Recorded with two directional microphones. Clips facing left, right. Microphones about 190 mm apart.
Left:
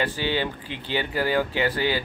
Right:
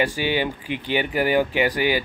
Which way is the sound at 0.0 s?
15° right (ahead or behind).